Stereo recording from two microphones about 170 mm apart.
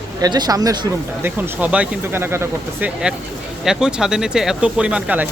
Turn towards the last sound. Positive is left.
turn(degrees=-5)  # may be behind; listen again after turning